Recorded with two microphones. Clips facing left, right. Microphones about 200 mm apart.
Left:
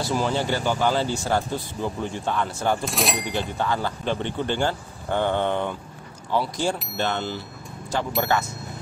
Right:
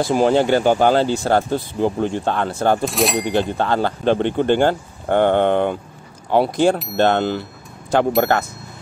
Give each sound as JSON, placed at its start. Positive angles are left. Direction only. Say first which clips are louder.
{"t": 0.0, "sound": "speech", "louder": "right 9 dB", "side_deg": -60}
{"t": 2.8, "sound": "speech", "louder": "right 7 dB", "side_deg": 0}
{"t": 3.5, "sound": "speech", "louder": "right 6 dB", "side_deg": -70}